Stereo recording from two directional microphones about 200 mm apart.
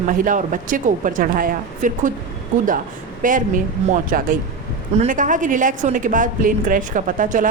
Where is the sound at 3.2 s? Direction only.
40° right (ahead or behind).